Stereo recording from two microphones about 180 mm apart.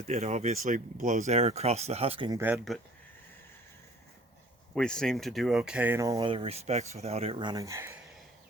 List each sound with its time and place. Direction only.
0.1 s speech: 40° right (ahead or behind)
4.7 s speech: 5° left (ahead or behind); by 7.9 s 15° right (ahead or behind)